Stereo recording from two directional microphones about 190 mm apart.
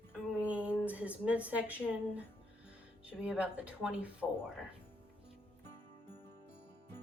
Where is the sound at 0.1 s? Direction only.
5° right (ahead or behind).